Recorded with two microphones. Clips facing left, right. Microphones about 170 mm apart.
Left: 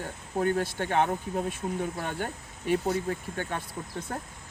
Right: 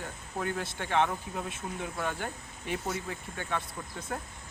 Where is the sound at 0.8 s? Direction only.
45° left (ahead or behind).